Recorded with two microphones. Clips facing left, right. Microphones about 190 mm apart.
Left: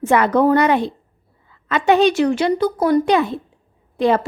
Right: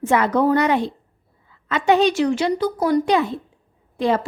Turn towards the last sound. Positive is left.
turn(degrees=60)  # may be behind; listen again after turning